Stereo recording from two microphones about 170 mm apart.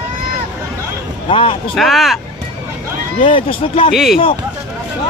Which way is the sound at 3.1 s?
30° left (ahead or behind).